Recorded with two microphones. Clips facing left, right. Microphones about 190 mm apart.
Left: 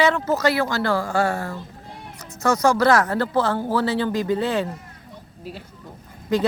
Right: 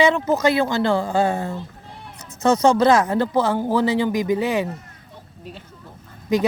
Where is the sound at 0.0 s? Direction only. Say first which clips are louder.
Right 2 dB; 15° right (ahead or behind).